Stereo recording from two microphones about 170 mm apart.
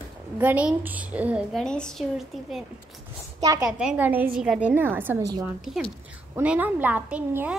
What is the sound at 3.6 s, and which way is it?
A woman's voice, 5° right (ahead or behind).